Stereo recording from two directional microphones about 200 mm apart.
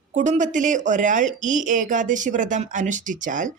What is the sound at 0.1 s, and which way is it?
Speech, 40° right (ahead or behind).